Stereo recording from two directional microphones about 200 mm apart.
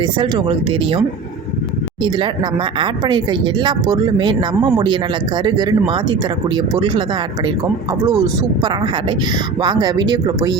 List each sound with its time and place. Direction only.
0.0 s speech: 25° right (ahead or behind)
8.0 s speech: 20° right (ahead or behind)